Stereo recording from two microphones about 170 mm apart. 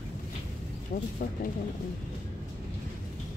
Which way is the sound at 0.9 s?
55° left (ahead or behind).